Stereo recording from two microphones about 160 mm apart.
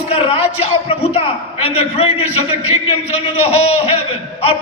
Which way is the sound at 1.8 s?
40° left (ahead or behind).